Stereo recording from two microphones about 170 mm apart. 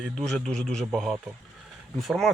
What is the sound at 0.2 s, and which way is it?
Speech, 5° left (ahead or behind).